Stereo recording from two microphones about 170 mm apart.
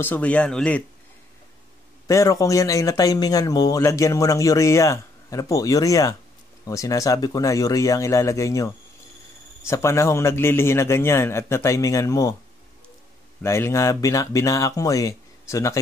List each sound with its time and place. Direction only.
0.0 s a man's voice: 10° left (ahead or behind)
2.0 s speech: 20° left (ahead or behind)
9.7 s a man's voice: 15° left (ahead or behind)
13.4 s speech: 15° left (ahead or behind)